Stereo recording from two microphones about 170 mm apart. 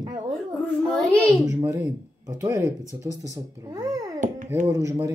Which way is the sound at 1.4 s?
15° right (ahead or behind).